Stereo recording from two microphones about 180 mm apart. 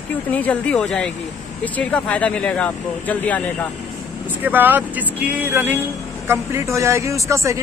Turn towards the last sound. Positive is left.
turn(degrees=-15)  # may be behind; listen again after turning